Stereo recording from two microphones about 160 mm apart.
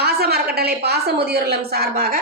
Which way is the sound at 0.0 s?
80° right.